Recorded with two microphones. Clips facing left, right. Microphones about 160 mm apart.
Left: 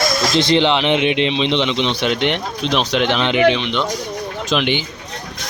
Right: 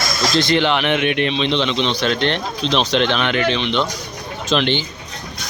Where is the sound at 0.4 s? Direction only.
25° left (ahead or behind).